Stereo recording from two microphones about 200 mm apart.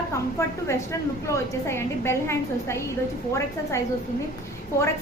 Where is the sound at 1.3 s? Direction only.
10° left (ahead or behind).